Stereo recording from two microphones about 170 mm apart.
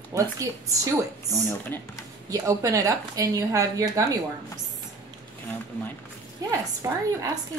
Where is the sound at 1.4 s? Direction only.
15° left (ahead or behind).